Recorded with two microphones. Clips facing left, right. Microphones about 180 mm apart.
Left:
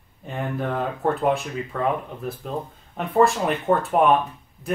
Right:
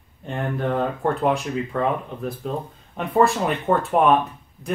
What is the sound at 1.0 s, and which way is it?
Speech, centre (ahead or behind).